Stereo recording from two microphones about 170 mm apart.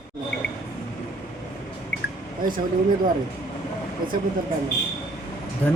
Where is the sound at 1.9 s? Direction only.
90° left.